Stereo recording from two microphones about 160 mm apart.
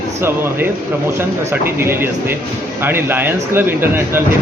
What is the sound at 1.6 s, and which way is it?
Speech, 15° right (ahead or behind).